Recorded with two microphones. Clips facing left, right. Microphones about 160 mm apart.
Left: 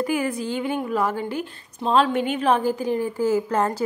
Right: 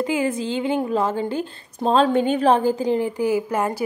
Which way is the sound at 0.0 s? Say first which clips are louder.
Right 2 dB; 20° right (ahead or behind).